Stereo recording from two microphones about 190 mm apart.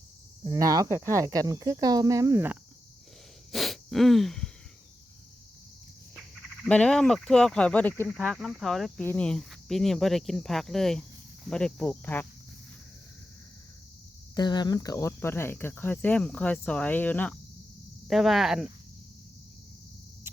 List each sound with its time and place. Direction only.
0.4 s speech: 20° right (ahead or behind)
3.5 s wheeze: centre (ahead or behind)
6.7 s speech: 5° left (ahead or behind)
14.3 s speech: 20° left (ahead or behind); by 18.7 s centre (ahead or behind)